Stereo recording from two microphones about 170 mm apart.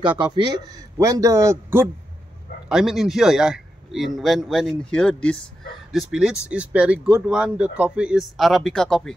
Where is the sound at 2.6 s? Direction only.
Centre (ahead or behind).